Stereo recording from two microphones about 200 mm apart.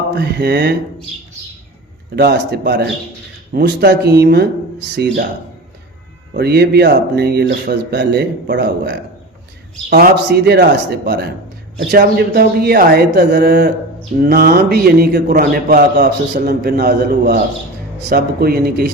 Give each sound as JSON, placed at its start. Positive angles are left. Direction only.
{"t": 0.2, "sound": "speech", "side_deg": -55}
{"t": 2.1, "sound": "a man's voice", "side_deg": -55}
{"t": 6.3, "sound": "a man's voice", "side_deg": -55}